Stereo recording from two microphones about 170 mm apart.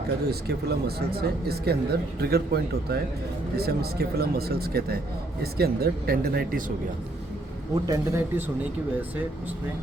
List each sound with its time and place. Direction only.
0.3 s speech: 70° right (ahead or behind)
7.9 s speech: 15° right (ahead or behind)